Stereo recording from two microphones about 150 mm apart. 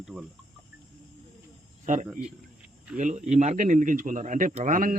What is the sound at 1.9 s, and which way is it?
A man's voice, 60° right (ahead or behind).